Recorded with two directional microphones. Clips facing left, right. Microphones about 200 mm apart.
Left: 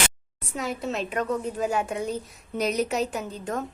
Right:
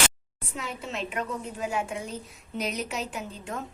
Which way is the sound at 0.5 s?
40° left (ahead or behind).